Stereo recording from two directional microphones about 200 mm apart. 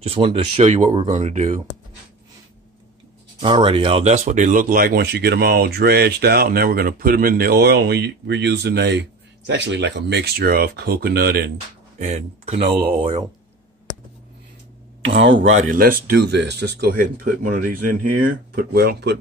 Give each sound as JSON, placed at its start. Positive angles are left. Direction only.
{"t": 0.0, "sound": "speech", "side_deg": -30}
{"t": 3.3, "sound": "speech", "side_deg": -25}
{"t": 12.0, "sound": "speech", "side_deg": -35}
{"t": 15.0, "sound": "speech", "side_deg": -70}
{"t": 15.5, "sound": "speech", "side_deg": -40}